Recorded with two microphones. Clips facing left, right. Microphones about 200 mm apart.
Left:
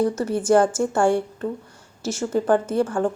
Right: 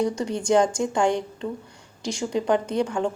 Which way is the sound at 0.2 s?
5° left (ahead or behind).